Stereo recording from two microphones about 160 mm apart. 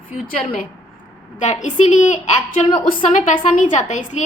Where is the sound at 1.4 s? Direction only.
50° left (ahead or behind).